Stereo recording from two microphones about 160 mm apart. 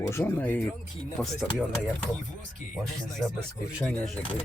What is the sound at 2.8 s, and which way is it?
Speech, 5° left (ahead or behind).